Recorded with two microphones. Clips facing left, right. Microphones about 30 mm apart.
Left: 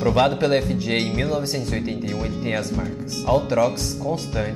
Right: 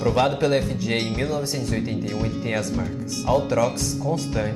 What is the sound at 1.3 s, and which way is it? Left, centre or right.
Speech, left.